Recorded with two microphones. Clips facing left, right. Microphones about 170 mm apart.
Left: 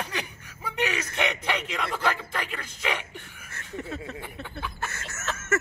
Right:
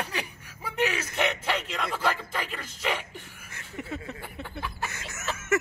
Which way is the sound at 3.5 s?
15° right (ahead or behind).